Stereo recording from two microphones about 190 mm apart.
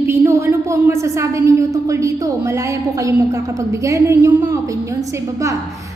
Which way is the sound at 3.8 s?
15° right (ahead or behind).